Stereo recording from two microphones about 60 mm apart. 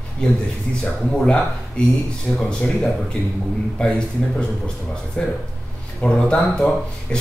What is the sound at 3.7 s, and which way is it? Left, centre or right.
Speech, centre.